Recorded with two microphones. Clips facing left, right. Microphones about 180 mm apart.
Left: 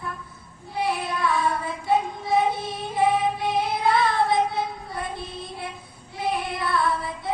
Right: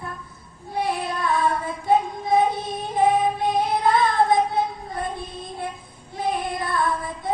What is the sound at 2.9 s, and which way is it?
Child singing, 50° right (ahead or behind).